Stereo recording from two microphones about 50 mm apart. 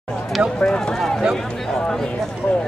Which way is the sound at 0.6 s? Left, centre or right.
Centre.